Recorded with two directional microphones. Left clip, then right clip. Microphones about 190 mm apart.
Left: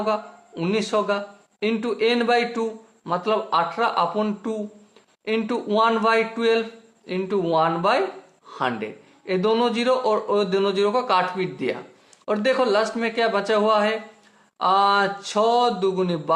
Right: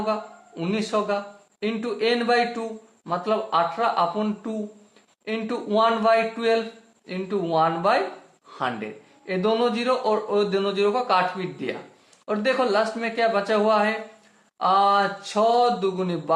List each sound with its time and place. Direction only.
0.0 s a man's voice: 35° left (ahead or behind)